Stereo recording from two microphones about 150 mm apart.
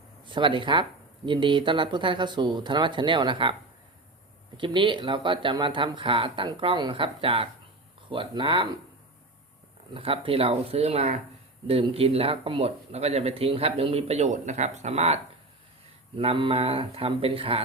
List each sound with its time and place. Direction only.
0.3 s speech: 35° right (ahead or behind)
4.5 s speech: 35° right (ahead or behind)
9.9 s speech: 35° right (ahead or behind)
16.1 s speech: 35° right (ahead or behind)